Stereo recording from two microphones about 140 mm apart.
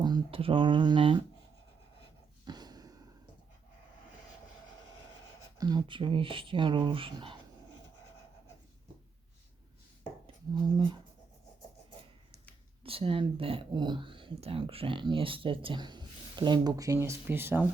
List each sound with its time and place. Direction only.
0.0 s speech: 30° right (ahead or behind)
2.4 s a sound: 30° right (ahead or behind)
5.5 s speech: 30° right (ahead or behind)
10.5 s speech: 35° right (ahead or behind)
12.8 s speech: 40° right (ahead or behind); by 17.7 s 15° right (ahead or behind)